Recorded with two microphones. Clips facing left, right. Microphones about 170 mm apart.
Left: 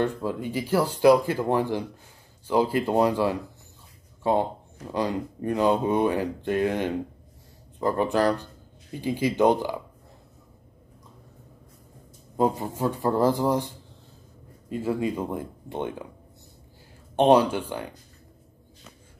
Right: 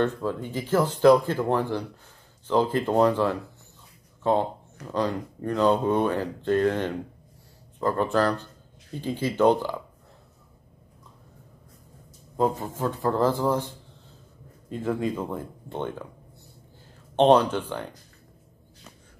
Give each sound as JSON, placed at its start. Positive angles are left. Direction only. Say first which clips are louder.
{"t": 0.0, "sound": "speech", "louder": "right 1 dB", "side_deg": 10}
{"t": 12.4, "sound": "speech", "louder": "left 1 dB", "side_deg": 20}
{"t": 14.7, "sound": "speech", "louder": "left 1 dB", "side_deg": 10}
{"t": 17.1, "sound": "speech", "louder": "even", "side_deg": 10}